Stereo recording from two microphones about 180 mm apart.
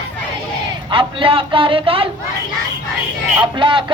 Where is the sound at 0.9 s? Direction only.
30° right (ahead or behind).